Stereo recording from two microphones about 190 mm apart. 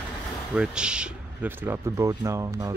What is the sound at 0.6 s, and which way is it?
Speech, 5° right (ahead or behind).